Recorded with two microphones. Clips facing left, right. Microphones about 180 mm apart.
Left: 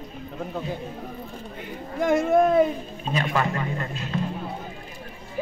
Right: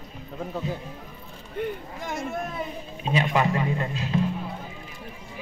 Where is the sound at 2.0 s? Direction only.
60° left (ahead or behind).